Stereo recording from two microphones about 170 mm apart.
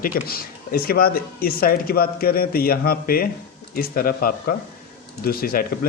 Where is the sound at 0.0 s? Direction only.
60° left (ahead or behind).